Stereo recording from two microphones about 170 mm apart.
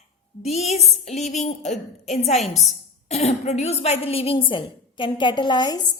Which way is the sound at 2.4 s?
Centre (ahead or behind).